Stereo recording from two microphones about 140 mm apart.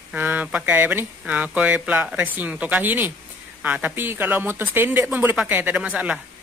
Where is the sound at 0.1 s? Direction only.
10° right (ahead or behind).